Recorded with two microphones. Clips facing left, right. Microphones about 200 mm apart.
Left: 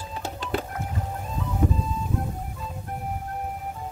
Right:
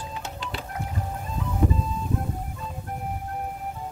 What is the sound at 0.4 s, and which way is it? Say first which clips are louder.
Music: left 10 dB; 45° left (ahead or behind).